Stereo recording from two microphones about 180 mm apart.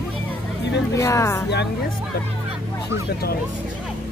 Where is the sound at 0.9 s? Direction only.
15° left (ahead or behind).